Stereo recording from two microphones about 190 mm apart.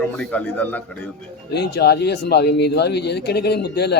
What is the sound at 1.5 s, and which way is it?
Speech, 60° left (ahead or behind).